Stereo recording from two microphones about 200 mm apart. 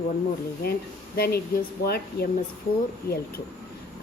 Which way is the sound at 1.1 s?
50° left (ahead or behind).